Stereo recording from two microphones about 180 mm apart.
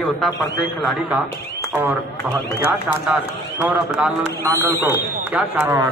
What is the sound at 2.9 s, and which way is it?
A man's voice, 5° right (ahead or behind).